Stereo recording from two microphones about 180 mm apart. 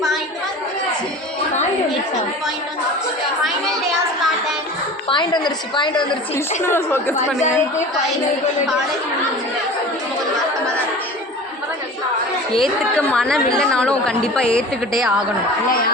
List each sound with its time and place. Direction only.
5.0 s a woman's voice: 25° left (ahead or behind)
6.6 s a woman's voice: 15° left (ahead or behind)
12.5 s a woman's voice: centre (ahead or behind)